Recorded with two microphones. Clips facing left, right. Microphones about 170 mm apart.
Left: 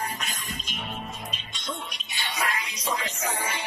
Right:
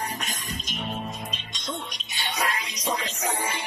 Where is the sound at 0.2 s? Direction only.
45° right (ahead or behind).